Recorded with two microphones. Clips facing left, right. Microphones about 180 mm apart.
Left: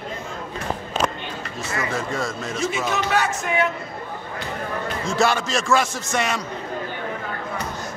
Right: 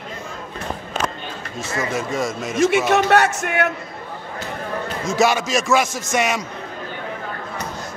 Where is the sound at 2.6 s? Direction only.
80° right.